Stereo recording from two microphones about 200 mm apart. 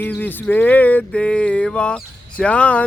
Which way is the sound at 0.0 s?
10° left (ahead or behind).